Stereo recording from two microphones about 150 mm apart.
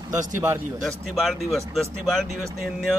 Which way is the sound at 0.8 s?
Centre (ahead or behind).